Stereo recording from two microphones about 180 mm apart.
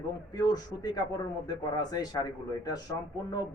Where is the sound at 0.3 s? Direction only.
20° left (ahead or behind).